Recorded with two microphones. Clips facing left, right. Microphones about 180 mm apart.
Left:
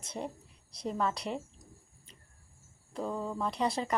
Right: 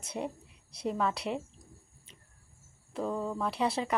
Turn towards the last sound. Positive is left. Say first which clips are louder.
# right 1 dB
turn(degrees=-5)  # may be behind; listen again after turning